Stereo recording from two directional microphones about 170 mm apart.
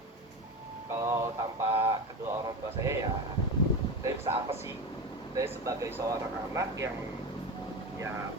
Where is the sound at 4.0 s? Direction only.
15° right (ahead or behind).